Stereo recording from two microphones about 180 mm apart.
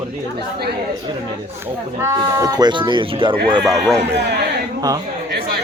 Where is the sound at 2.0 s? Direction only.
15° right (ahead or behind).